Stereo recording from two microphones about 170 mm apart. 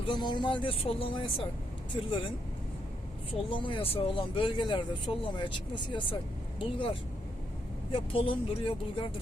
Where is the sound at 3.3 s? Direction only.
30° left (ahead or behind).